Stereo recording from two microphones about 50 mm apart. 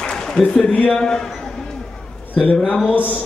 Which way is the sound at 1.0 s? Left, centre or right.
Centre.